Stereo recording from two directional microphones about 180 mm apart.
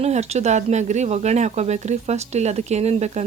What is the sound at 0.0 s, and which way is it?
Speech, 40° right (ahead or behind).